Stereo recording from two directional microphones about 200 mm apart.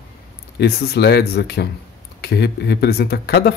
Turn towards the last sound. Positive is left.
turn(degrees=55)  # may be behind; listen again after turning